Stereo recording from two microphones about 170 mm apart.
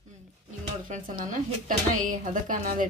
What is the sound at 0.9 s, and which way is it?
Speech, 50° right (ahead or behind).